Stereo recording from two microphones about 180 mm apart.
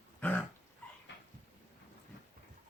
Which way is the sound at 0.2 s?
10° left (ahead or behind).